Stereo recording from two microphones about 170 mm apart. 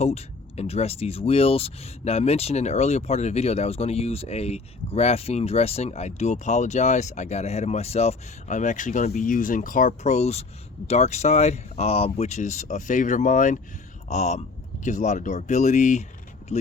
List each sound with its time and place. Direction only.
0.0 s speech: 40° left (ahead or behind)